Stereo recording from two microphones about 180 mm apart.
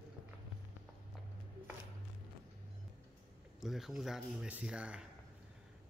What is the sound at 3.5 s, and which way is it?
A man's voice, centre (ahead or behind).